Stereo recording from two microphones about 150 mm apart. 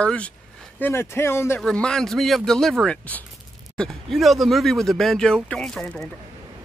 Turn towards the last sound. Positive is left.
turn(degrees=5)  # may be behind; listen again after turning